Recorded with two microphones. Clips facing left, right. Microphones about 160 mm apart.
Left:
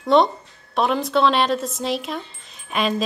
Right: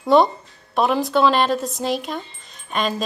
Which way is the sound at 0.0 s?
Centre (ahead or behind).